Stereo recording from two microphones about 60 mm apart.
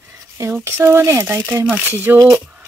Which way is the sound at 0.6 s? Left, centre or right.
Right.